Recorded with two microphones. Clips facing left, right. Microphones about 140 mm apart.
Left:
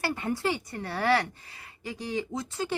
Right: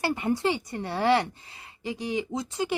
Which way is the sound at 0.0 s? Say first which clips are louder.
Right 3 dB; 20° right (ahead or behind).